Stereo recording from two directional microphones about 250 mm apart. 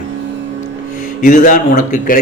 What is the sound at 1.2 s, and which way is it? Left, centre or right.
A man's voice, left.